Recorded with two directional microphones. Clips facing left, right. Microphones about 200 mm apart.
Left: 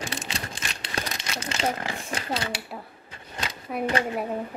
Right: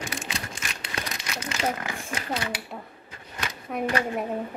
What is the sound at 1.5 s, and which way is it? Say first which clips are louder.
Speech: left 1 dB; 30° left (ahead or behind).